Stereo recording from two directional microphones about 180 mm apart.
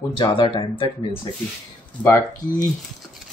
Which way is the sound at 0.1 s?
25° left (ahead or behind).